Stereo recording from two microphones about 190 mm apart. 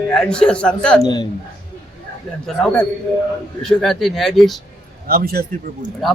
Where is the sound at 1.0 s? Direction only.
20° left (ahead or behind).